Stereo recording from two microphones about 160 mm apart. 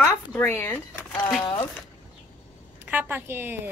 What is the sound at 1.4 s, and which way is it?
Speech, 35° left (ahead or behind).